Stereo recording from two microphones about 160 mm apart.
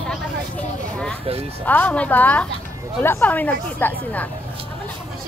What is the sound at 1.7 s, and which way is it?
Speech, 10° left (ahead or behind).